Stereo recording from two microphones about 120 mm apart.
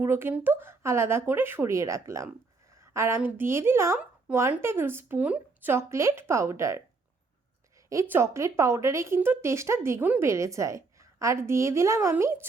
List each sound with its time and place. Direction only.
0.0 s a woman's voice: 20° right (ahead or behind)
5.7 s speech: 25° right (ahead or behind)
8.1 s speech: 25° right (ahead or behind)